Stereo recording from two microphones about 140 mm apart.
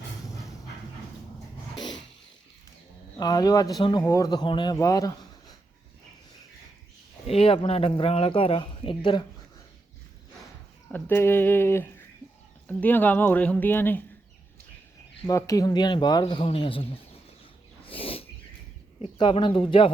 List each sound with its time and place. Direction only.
3.2 s speech: 25° left (ahead or behind)
7.3 s speech: 45° left (ahead or behind)
10.9 s speech: 15° left (ahead or behind)
15.3 s speech: 25° left (ahead or behind); by 17.0 s 40° left (ahead or behind)
17.8 s a sound: 40° left (ahead or behind)
19.2 s speech: 35° left (ahead or behind)